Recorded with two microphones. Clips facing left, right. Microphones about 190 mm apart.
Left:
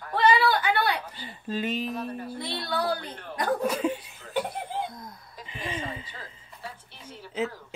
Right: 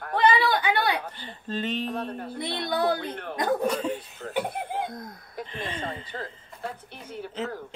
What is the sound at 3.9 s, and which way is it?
Laughter, 55° right (ahead or behind).